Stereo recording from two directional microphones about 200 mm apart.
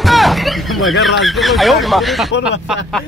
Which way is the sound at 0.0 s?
Centre (ahead or behind).